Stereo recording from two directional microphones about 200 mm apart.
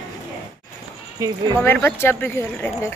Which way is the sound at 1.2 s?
15° right (ahead or behind).